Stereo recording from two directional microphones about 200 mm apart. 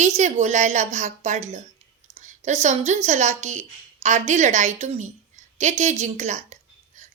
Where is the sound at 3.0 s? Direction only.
35° right (ahead or behind).